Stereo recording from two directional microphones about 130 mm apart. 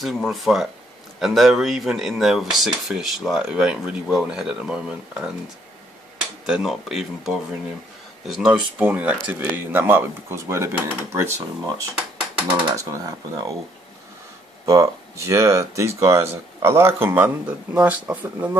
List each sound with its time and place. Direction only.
0.0 s speech: centre (ahead or behind)
6.4 s speech: 5° right (ahead or behind); by 11.2 s 20° right (ahead or behind)
12.4 s speech: 5° right (ahead or behind)
12.7 s speech: 25° right (ahead or behind)
14.7 s speech: 25° right (ahead or behind)